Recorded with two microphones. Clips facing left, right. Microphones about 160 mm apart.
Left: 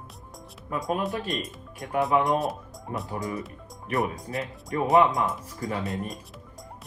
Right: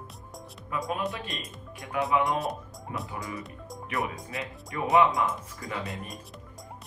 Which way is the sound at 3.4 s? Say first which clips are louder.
Left 2 dB; centre (ahead or behind).